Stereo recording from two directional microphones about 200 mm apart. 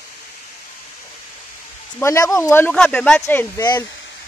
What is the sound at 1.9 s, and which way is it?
Speech, 15° left (ahead or behind).